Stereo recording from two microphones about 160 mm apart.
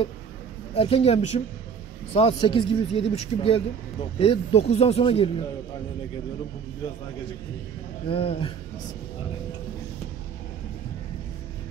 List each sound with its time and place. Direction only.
0.7 s speech: 35° left (ahead or behind)
8.1 s speech: 35° left (ahead or behind)